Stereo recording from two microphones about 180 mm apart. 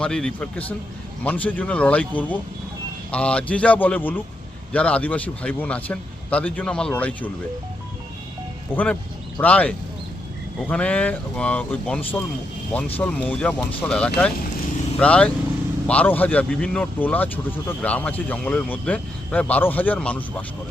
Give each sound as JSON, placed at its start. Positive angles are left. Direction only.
{"t": 0.0, "sound": "a man's voice", "side_deg": 5}
{"t": 8.7, "sound": "speech", "side_deg": 10}